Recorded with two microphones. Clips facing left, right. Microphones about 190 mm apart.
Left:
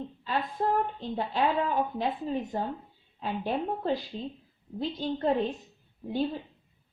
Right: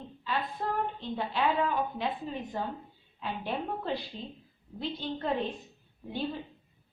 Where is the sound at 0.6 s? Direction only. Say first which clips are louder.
Left 9 dB; 40° left (ahead or behind).